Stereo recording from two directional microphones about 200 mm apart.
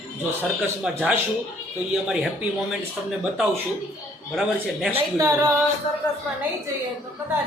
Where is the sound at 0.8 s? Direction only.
5° right (ahead or behind).